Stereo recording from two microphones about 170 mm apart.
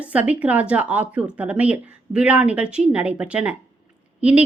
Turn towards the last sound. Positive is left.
turn(degrees=-5)  # may be behind; listen again after turning